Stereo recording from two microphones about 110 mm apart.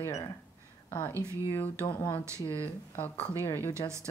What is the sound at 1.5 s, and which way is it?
Speech, 15° left (ahead or behind).